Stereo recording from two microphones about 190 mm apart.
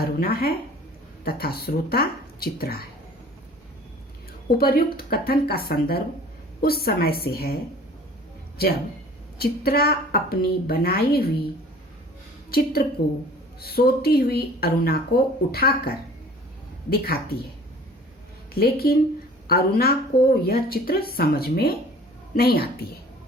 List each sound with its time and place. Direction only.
0.0 s a woman's voice: 50° left (ahead or behind)
4.5 s a woman's voice: 50° left (ahead or behind)
9.4 s a woman's voice: 55° left (ahead or behind)
12.5 s a woman's voice: 55° left (ahead or behind)
18.5 s a woman's voice: 55° left (ahead or behind)